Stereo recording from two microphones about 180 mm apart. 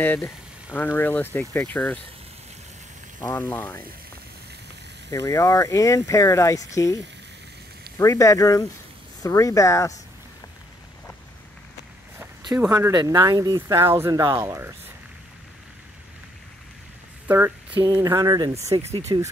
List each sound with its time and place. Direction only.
0.0 s speech: 10° left (ahead or behind)
3.2 s speech: 15° left (ahead or behind)
5.1 s speech: 15° left (ahead or behind)
8.0 s speech: 15° left (ahead or behind)
12.5 s speech: 15° right (ahead or behind)
17.3 s a sound: 10° right (ahead or behind)
17.7 s speech: 20° right (ahead or behind)